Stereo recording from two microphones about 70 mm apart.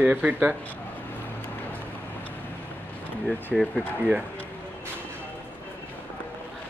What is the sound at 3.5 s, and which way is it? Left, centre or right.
Speech, centre.